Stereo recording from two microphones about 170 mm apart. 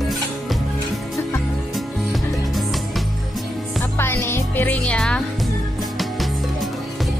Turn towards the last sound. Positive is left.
turn(degrees=5)  # may be behind; listen again after turning